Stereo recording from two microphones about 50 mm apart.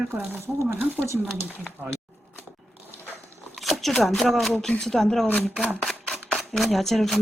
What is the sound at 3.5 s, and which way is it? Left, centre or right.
Speech, centre.